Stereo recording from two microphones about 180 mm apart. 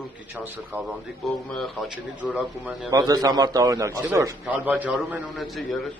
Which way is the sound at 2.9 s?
20° right (ahead or behind).